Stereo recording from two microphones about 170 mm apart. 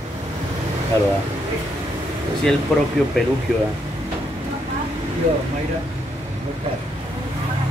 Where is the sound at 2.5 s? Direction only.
5° left (ahead or behind).